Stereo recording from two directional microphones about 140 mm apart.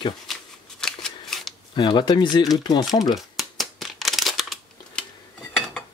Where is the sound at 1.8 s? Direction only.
30° left (ahead or behind).